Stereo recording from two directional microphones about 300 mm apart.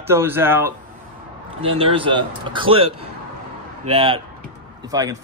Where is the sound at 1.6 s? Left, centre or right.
Centre.